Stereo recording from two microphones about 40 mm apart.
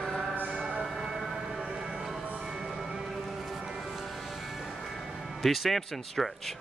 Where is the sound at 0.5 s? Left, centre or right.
Right.